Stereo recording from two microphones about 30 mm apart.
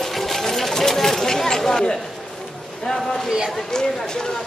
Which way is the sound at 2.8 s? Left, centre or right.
Centre.